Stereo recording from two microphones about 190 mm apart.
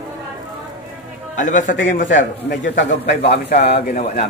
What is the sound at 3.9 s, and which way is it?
Speech, 35° left (ahead or behind).